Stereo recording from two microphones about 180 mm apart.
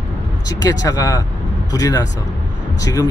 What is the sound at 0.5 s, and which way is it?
Speech, 20° left (ahead or behind).